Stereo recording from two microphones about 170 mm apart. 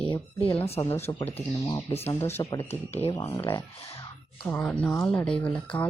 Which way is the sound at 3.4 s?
30° left (ahead or behind).